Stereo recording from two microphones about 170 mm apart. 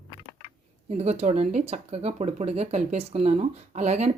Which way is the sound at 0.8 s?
40° right (ahead or behind).